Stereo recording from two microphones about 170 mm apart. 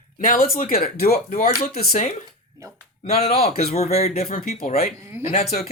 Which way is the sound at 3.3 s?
65° left (ahead or behind).